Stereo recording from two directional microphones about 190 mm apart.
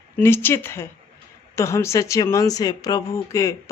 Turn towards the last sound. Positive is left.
turn(degrees=15)  # may be behind; listen again after turning